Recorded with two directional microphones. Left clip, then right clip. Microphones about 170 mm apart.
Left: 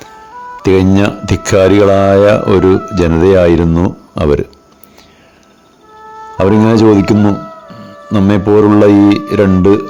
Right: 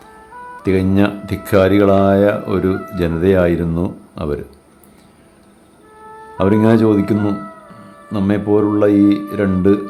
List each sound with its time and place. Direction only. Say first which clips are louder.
0.6 s speech: left 6 dB; 45° left (ahead or behind)
6.1 s music: left 8 dB; 25° left (ahead or behind)
6.4 s speech: left 5 dB; 45° left (ahead or behind)
7.2 s music: left 7 dB; 25° left (ahead or behind)
8.3 s speech: left 7 dB; 45° left (ahead or behind)